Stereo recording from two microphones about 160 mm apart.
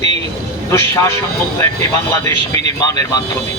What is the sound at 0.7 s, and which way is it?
Speech, 20° left (ahead or behind).